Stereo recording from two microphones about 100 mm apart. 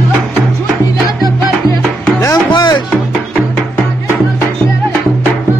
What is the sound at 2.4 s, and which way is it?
Music, 50° left (ahead or behind).